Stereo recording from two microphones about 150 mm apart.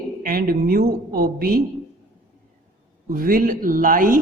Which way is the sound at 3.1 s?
75° right (ahead or behind).